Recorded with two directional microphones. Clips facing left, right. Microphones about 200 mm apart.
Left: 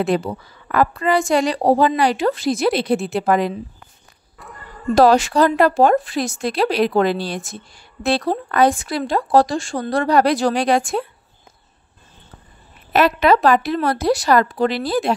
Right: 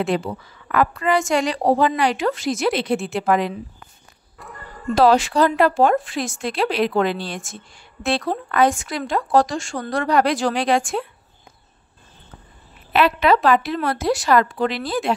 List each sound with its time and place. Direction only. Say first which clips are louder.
0.0 s speech: left 3 dB; 40° left (ahead or behind)
4.4 s a sound: even; centre (ahead or behind)
4.9 s speech: left 2 dB; 45° left (ahead or behind)
12.9 s speech: left 2 dB; 40° left (ahead or behind)